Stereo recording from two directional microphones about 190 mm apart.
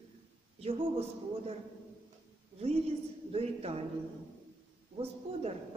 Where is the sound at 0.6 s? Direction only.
35° right (ahead or behind).